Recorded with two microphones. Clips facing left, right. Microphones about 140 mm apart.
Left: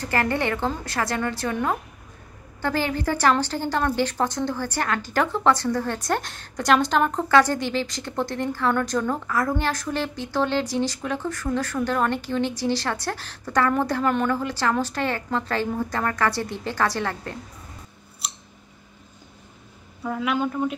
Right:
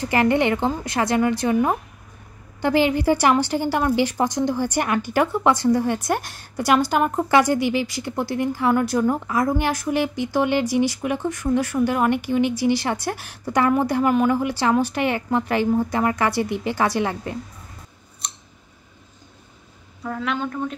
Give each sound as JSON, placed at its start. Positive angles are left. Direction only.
{"t": 0.0, "sound": "a woman's voice", "side_deg": -20}
{"t": 20.0, "sound": "a woman's voice", "side_deg": 5}